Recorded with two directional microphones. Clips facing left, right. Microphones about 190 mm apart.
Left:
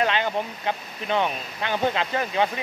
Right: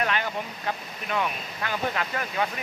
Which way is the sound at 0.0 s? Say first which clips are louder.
Left 4 dB; 25° left (ahead or behind).